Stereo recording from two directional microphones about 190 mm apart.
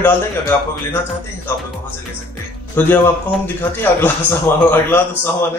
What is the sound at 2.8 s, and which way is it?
Speech, 10° left (ahead or behind).